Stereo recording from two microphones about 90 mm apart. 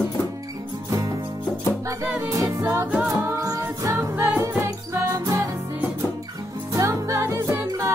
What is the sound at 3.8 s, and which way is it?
Music, 35° right (ahead or behind).